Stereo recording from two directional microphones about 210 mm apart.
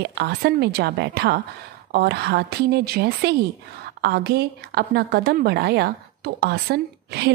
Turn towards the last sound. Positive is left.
turn(degrees=-50)  # may be behind; listen again after turning